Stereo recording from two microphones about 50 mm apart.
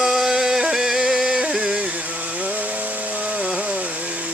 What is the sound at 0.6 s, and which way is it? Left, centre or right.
Music, centre.